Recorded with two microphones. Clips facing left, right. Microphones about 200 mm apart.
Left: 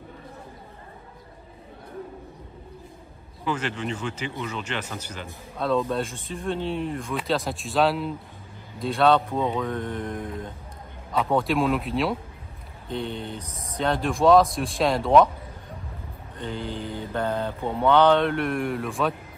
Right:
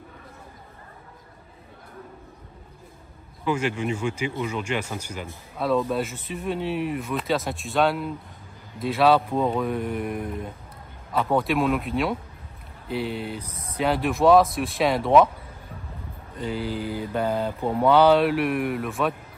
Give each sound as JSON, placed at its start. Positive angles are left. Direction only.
{"t": 3.4, "sound": "mantra", "side_deg": -10}
{"t": 6.2, "sound": "speech", "side_deg": -5}
{"t": 9.6, "sound": "mantra", "side_deg": -10}
{"t": 11.1, "sound": "speech", "side_deg": 0}
{"t": 12.8, "sound": "mantra", "side_deg": -10}
{"t": 13.4, "sound": "speech", "side_deg": -30}
{"t": 13.7, "sound": "speech", "side_deg": -5}
{"t": 16.3, "sound": "mantra", "side_deg": -10}